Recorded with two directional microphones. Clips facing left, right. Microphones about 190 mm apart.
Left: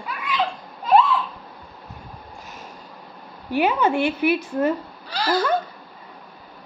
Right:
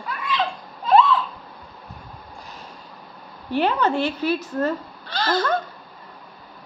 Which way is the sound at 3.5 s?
10° left (ahead or behind).